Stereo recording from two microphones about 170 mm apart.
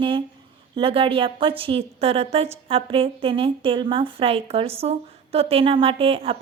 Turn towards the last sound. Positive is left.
turn(degrees=-35)  # may be behind; listen again after turning